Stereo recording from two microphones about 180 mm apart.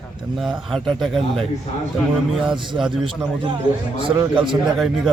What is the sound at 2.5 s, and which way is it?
Speech, 25° right (ahead or behind).